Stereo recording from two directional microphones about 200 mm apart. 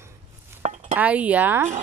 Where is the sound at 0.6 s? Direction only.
35° right (ahead or behind).